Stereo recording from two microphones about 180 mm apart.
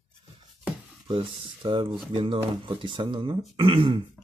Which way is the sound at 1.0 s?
30° right (ahead or behind).